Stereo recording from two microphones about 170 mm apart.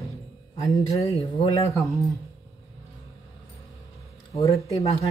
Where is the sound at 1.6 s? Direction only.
20° left (ahead or behind).